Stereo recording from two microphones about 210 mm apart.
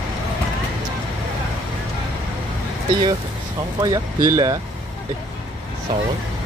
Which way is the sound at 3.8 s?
15° right (ahead or behind).